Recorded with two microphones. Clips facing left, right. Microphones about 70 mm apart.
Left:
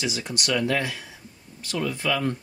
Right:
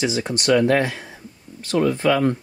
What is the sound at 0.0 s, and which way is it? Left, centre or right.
Speech, right.